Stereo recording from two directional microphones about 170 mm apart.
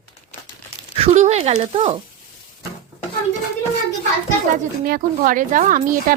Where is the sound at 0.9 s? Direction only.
40° right (ahead or behind).